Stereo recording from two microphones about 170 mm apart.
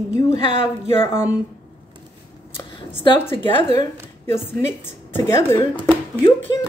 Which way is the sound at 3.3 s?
30° left (ahead or behind).